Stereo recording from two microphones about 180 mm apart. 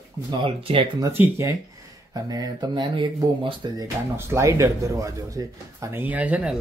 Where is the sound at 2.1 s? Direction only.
20° right (ahead or behind).